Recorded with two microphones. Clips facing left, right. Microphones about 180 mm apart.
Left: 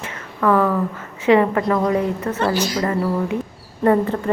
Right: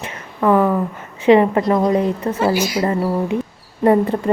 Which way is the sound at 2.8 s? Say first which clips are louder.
Right 2 dB; 25° right (ahead or behind).